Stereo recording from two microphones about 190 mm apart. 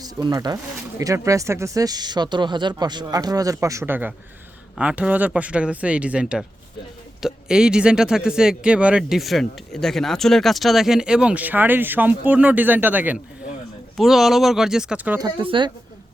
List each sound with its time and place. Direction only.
0.0 s speech: 20° right (ahead or behind)
15.2 s speech: 25° right (ahead or behind)